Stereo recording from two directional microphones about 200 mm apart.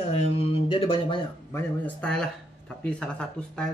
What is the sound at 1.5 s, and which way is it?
Speech, 5° left (ahead or behind).